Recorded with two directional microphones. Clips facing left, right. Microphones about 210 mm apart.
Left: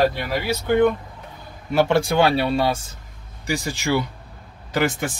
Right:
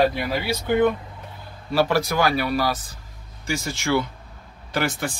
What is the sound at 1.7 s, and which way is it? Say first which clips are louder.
Speech: left 3 dB; 25° left (ahead or behind).